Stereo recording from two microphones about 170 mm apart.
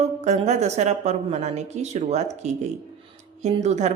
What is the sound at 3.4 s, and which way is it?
Speech, 40° right (ahead or behind).